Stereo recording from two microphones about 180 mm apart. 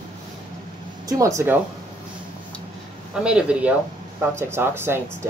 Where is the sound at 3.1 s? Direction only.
5° right (ahead or behind).